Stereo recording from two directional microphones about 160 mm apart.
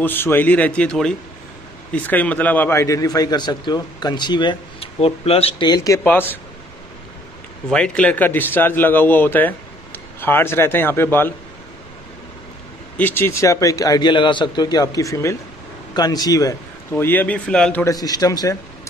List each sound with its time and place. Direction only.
0.0 s a man's voice: 15° left (ahead or behind); by 5.9 s 30° left (ahead or behind)
6.0 s a man's voice: 10° left (ahead or behind)
7.7 s a man's voice: 5° left (ahead or behind)
12.9 s a man's voice: 10° left (ahead or behind)
17.8 s a man's voice: 25° left (ahead or behind)